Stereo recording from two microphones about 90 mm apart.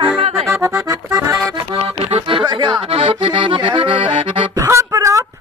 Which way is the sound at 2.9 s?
80° right.